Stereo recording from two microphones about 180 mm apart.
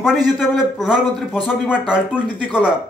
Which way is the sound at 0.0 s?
Centre (ahead or behind).